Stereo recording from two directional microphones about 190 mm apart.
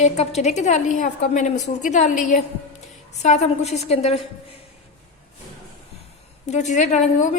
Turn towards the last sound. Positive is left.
turn(degrees=40)  # may be behind; listen again after turning